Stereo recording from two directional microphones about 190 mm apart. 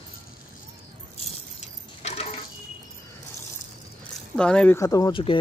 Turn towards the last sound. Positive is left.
turn(degrees=25)  # may be behind; listen again after turning